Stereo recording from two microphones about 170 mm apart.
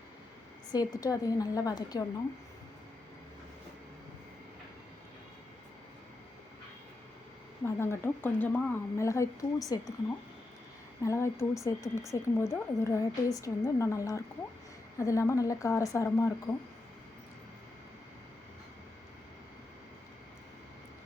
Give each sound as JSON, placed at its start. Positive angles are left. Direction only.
{"t": 0.7, "sound": "a woman's voice", "side_deg": 20}
{"t": 7.6, "sound": "a woman's voice", "side_deg": 15}
{"t": 11.0, "sound": "a woman's voice", "side_deg": 15}